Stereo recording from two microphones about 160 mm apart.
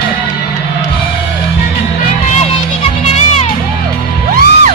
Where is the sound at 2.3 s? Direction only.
45° left (ahead or behind).